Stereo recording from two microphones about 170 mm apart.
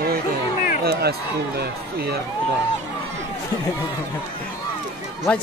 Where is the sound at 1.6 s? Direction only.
70° right (ahead or behind).